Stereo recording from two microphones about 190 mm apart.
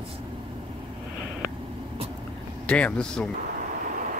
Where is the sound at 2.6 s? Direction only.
5° left (ahead or behind).